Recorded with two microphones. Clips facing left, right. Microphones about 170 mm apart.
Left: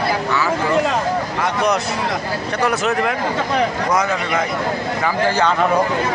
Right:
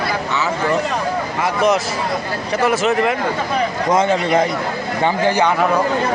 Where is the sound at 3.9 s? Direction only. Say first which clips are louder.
Right 4 dB; 25° right (ahead or behind).